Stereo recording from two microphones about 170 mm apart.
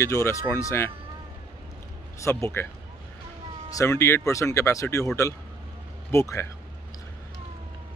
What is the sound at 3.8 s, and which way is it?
Speech, 15° left (ahead or behind).